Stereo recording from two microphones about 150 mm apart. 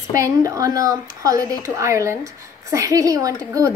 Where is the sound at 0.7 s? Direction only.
20° right (ahead or behind).